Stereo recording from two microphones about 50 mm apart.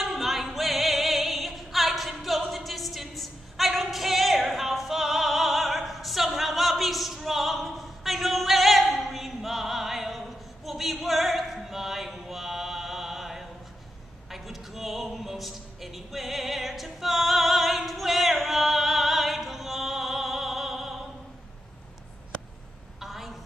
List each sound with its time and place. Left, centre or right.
0.0 s singing: centre
14.3 s music: centre
22.9 s a sound: centre